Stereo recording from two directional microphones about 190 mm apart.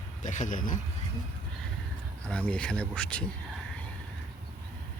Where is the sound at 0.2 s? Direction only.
40° left (ahead or behind).